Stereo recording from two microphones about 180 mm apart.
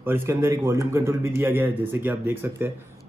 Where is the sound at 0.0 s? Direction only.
10° right (ahead or behind).